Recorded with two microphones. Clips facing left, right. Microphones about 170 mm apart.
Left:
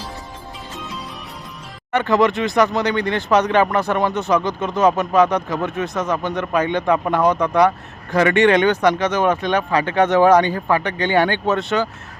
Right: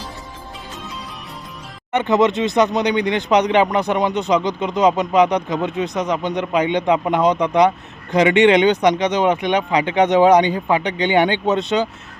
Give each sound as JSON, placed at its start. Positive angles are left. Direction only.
{"t": 1.9, "sound": "speech", "side_deg": -20}